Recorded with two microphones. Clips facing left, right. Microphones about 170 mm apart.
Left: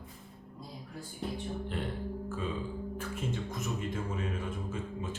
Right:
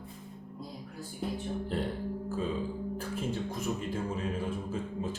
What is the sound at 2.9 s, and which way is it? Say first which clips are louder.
Music: right 2 dB; 35° right (ahead or behind).